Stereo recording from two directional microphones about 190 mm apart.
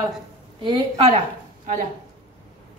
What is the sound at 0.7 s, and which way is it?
Speech, 25° right (ahead or behind).